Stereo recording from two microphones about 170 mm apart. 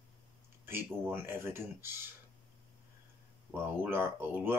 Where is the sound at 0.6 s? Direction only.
15° right (ahead or behind).